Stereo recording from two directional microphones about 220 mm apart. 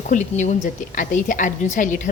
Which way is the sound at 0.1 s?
35° left (ahead or behind).